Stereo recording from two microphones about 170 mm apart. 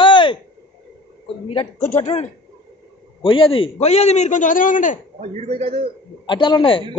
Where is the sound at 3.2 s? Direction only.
30° left (ahead or behind); by 5.0 s 50° left (ahead or behind).